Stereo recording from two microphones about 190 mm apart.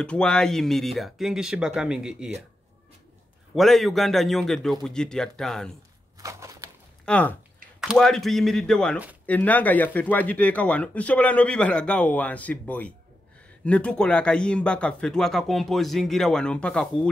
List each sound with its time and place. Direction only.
0.0 s speech: 5° left (ahead or behind)
3.5 s speech: centre (ahead or behind)
6.1 s a sound: 15° right (ahead or behind)
7.1 s speech: 5° left (ahead or behind)